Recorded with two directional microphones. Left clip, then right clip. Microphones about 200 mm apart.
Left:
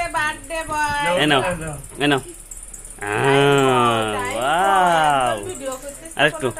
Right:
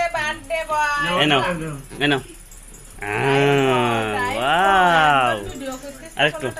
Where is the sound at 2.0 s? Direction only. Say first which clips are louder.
Left 1 dB; 15° left (ahead or behind).